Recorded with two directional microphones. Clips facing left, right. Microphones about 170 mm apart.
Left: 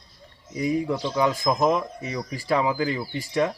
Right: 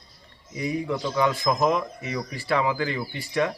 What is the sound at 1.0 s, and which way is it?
Speech, 20° left (ahead or behind).